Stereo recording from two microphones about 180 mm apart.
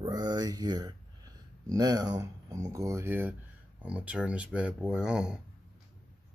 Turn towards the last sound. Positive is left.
turn(degrees=-5)  # may be behind; listen again after turning